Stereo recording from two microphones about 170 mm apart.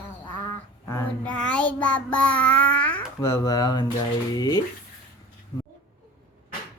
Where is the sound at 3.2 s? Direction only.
20° left (ahead or behind).